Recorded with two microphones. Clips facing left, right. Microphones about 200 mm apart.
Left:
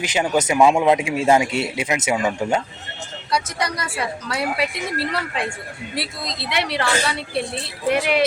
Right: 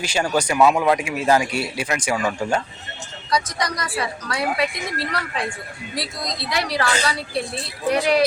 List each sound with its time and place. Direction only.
0.0 s a man's voice: 20° left (ahead or behind)
3.2 s speech: 5° left (ahead or behind)
6.5 s a woman's voice: centre (ahead or behind)